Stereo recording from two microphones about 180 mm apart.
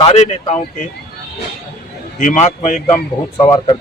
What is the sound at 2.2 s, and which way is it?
Speech, 40° left (ahead or behind).